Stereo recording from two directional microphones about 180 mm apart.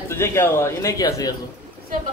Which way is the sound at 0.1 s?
15° left (ahead or behind).